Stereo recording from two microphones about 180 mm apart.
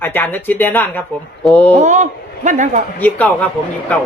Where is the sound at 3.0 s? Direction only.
10° left (ahead or behind).